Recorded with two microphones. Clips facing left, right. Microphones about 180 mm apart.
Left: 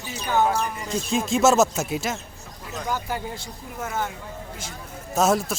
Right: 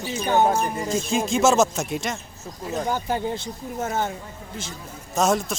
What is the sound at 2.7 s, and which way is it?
Speech, 30° right (ahead or behind).